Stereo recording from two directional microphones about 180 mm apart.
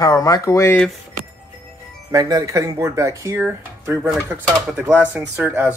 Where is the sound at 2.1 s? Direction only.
20° right (ahead or behind).